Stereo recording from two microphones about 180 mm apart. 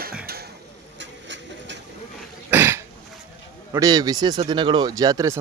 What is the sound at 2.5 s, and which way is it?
Cough, 15° right (ahead or behind).